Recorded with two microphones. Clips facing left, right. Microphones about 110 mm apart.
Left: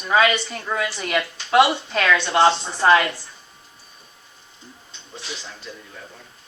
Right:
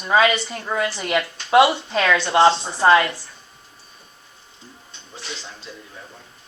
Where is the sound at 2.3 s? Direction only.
25° right (ahead or behind).